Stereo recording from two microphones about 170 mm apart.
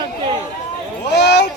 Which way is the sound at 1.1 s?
80° left.